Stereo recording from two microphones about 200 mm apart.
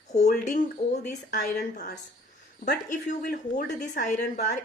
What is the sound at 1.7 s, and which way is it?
Speech, 55° left (ahead or behind).